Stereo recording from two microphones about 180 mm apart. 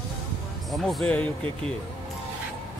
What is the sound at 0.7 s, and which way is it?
Speech, centre (ahead or behind).